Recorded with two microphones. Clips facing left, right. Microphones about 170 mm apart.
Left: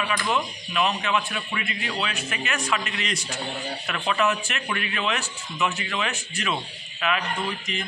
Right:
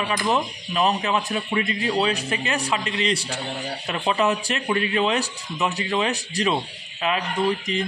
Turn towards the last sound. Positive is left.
turn(degrees=-35)  # may be behind; listen again after turning